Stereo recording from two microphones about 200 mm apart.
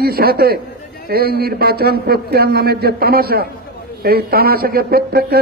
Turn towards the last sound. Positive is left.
turn(degrees=-50)  # may be behind; listen again after turning